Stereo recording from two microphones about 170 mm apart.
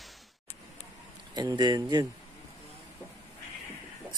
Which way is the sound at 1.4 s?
25° right (ahead or behind).